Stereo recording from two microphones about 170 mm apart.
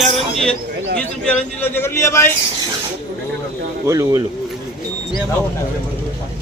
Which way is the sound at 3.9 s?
20° right (ahead or behind).